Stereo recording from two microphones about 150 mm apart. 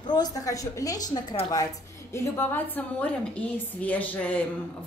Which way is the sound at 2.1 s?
15° left (ahead or behind).